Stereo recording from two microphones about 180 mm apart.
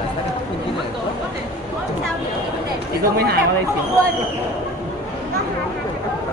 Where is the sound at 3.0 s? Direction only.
60° right (ahead or behind).